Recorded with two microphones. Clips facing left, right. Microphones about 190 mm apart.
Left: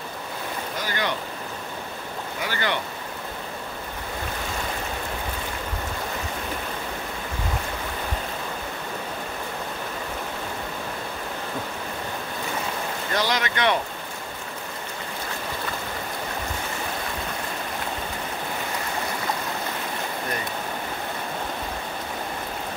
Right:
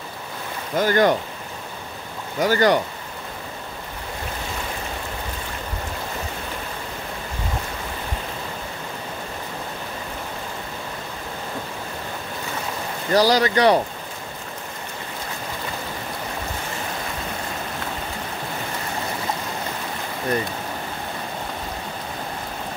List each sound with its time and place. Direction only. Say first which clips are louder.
0.7 s speech: right 13 dB; 45° right (ahead or behind)
2.4 s speech: right 11 dB; 40° right (ahead or behind)
13.1 s speech: right 9 dB; 35° right (ahead or behind)